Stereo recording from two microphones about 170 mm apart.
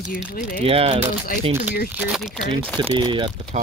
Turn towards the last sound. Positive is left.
turn(degrees=-30)  # may be behind; listen again after turning